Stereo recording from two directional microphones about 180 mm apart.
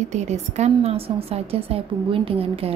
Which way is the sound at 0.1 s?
40° right (ahead or behind).